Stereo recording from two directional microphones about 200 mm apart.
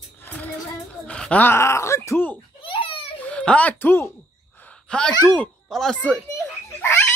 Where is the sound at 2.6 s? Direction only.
25° left (ahead or behind).